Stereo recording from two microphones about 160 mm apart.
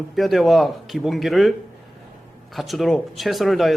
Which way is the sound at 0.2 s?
Centre (ahead or behind).